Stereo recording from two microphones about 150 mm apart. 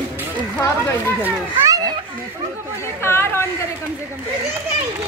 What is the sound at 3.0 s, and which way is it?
Chatter, 15° left (ahead or behind).